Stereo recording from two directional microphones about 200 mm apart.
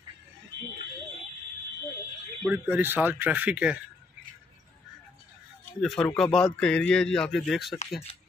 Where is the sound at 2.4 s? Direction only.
5° right (ahead or behind).